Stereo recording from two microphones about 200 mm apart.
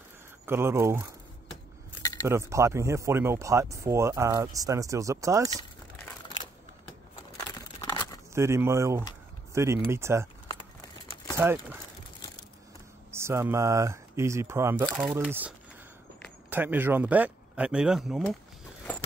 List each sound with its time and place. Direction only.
0.5 s speech: 10° right (ahead or behind)
2.2 s speech: 15° right (ahead or behind)
7.3 s a sound: 20° left (ahead or behind)
8.4 s speech: 15° right (ahead or behind)
11.3 s speech: 10° right (ahead or behind)
13.1 s speech: 15° right (ahead or behind)